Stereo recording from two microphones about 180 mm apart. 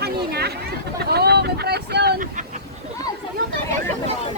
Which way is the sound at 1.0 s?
60° right (ahead or behind).